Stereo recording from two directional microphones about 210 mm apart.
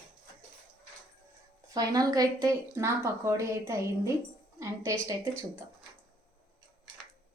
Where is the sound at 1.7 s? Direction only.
20° right (ahead or behind).